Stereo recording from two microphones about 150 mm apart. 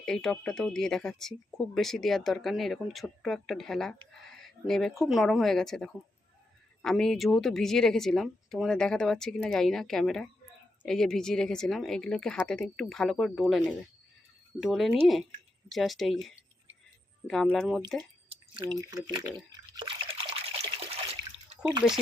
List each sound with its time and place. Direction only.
0.0 s speech: 5° left (ahead or behind)
19.0 s speech: 25° right (ahead or behind)
19.5 s water: 30° right (ahead or behind)